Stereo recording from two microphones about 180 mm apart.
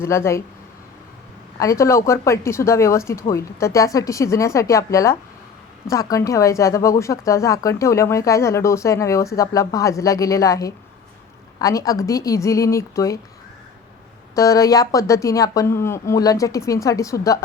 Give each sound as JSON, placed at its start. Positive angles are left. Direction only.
{"t": 0.0, "sound": "speech", "side_deg": 15}
{"t": 1.5, "sound": "speech", "side_deg": 15}
{"t": 14.3, "sound": "speech", "side_deg": 20}